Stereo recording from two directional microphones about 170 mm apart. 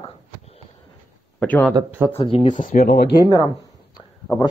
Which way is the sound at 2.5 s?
50° left (ahead or behind).